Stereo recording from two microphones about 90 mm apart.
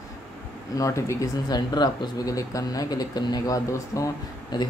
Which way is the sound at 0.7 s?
35° left (ahead or behind).